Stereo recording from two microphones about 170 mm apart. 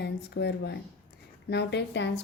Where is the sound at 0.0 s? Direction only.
75° left (ahead or behind).